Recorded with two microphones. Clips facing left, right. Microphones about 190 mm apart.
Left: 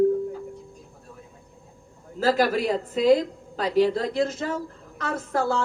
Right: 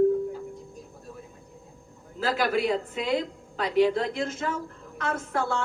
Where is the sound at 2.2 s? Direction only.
40° left (ahead or behind).